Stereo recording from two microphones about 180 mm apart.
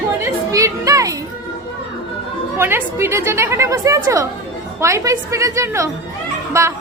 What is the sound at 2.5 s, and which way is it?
A woman's voice, 10° right (ahead or behind).